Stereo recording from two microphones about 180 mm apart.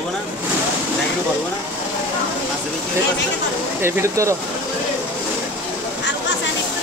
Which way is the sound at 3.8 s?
15° right (ahead or behind).